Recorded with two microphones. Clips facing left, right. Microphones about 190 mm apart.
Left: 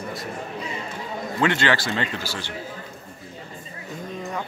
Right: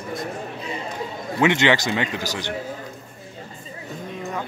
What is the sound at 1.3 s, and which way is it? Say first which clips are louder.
Speech: right 3 dB; 20° right (ahead or behind).